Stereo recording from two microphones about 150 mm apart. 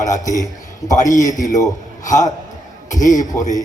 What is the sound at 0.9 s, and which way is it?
Speech, 55° left (ahead or behind).